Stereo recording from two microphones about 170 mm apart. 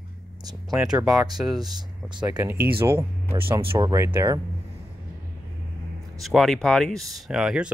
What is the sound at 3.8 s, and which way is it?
Speech, 20° right (ahead or behind).